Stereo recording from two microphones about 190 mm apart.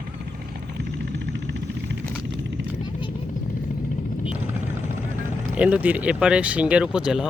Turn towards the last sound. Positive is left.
turn(degrees=-5)  # may be behind; listen again after turning